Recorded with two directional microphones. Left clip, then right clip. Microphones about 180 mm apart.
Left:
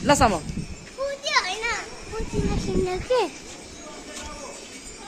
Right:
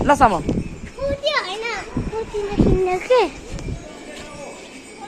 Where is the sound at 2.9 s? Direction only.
Centre (ahead or behind).